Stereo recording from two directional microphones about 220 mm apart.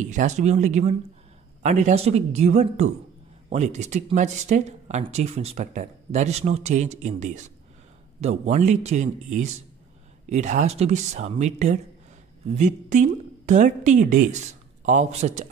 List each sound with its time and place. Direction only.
0.0 s a woman's voice: 35° right (ahead or behind)